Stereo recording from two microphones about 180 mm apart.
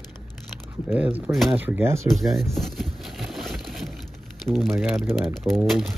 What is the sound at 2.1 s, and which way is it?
Crumpling, centre (ahead or behind).